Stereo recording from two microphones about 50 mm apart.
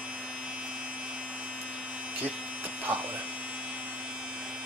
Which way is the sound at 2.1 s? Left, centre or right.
Right.